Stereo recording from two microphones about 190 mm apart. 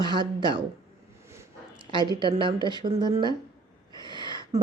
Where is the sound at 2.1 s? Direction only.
25° right (ahead or behind).